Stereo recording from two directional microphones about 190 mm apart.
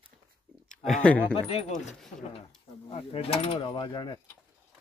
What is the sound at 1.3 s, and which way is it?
Speech, 30° left (ahead or behind).